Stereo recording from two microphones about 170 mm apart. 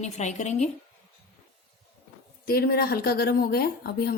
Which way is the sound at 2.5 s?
65° left (ahead or behind).